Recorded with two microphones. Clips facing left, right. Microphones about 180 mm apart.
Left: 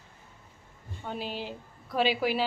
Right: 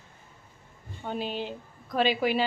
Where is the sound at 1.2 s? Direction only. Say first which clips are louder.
Right 4 dB; 5° left (ahead or behind).